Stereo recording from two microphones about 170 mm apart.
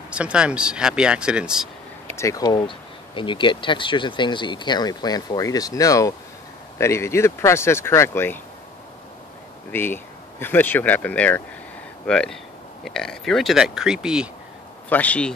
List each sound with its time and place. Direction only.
0.1 s speech: 5° right (ahead or behind)
2.1 s speech: 20° left (ahead or behind)
9.7 s speech: 10° left (ahead or behind); by 14.3 s 5° right (ahead or behind)
14.9 s speech: 10° left (ahead or behind)